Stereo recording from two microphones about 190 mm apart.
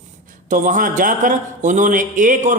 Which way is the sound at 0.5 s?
40° right (ahead or behind).